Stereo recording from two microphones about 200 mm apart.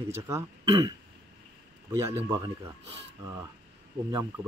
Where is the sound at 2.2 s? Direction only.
15° right (ahead or behind).